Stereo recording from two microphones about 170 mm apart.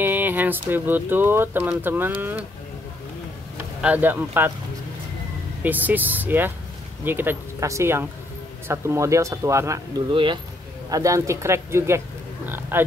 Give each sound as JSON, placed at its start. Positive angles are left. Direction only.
{"t": 0.0, "sound": "speech", "side_deg": -10}
{"t": 3.5, "sound": "speech", "side_deg": -10}
{"t": 5.6, "sound": "speech", "side_deg": -10}
{"t": 10.1, "sound": "speech", "side_deg": -30}
{"t": 12.4, "sound": "oink", "side_deg": -10}